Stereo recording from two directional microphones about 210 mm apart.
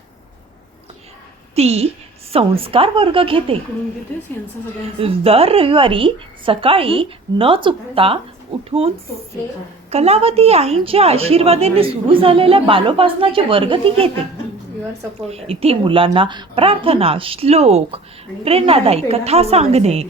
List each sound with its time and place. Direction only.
1.5 s a woman's voice: 30° right (ahead or behind)
4.9 s a woman's voice: 25° right (ahead or behind)
9.9 s a woman's voice: 30° right (ahead or behind)
15.3 s a woman's voice: 30° right (ahead or behind)